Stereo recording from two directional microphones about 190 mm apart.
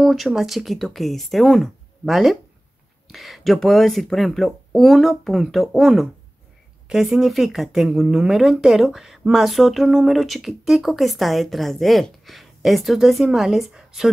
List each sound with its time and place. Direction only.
0.0 s speech: centre (ahead or behind)